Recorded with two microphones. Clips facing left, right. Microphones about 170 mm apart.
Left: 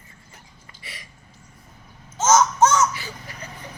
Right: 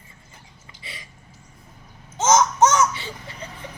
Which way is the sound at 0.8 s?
25° right (ahead or behind).